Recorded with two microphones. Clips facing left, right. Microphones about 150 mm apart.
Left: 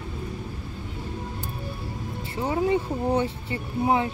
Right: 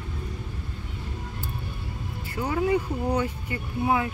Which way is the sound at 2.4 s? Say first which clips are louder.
Left 1 dB; 25° left (ahead or behind).